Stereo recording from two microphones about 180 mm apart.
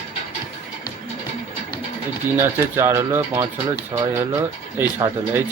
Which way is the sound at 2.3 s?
15° right (ahead or behind).